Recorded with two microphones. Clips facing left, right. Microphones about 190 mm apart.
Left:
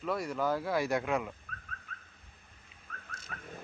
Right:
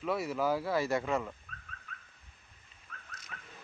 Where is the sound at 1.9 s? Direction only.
45° left (ahead or behind).